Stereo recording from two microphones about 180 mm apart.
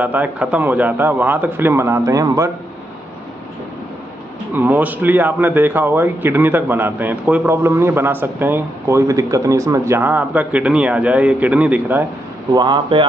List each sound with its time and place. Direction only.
0.0 s a man's voice: 10° right (ahead or behind)
4.6 s a man's voice: 10° right (ahead or behind)
12.5 s speech: 25° right (ahead or behind)